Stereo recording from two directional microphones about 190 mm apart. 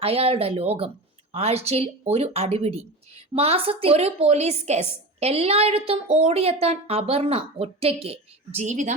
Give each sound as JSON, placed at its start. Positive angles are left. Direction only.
{"t": 0.0, "sound": "speech", "side_deg": -30}